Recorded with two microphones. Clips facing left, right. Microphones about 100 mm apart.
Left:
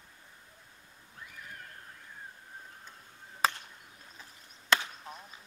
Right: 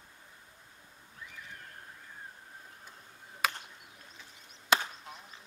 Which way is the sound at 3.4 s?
35° left (ahead or behind).